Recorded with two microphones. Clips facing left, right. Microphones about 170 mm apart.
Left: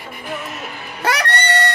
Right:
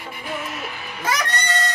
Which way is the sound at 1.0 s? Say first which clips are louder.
Left 5 dB; 70° left (ahead or behind).